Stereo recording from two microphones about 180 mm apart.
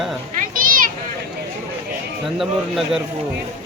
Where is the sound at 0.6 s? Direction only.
50° right (ahead or behind).